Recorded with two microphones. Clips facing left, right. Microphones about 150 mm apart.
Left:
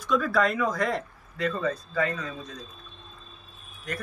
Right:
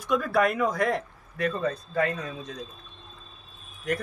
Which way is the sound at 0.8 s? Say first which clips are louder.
Right 2 dB; 60° right (ahead or behind).